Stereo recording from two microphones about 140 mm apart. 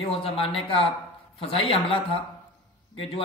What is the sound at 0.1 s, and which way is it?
A man's voice, 40° left (ahead or behind).